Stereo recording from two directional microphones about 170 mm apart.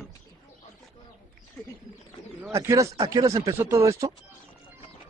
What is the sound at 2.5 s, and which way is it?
Speech, 20° right (ahead or behind).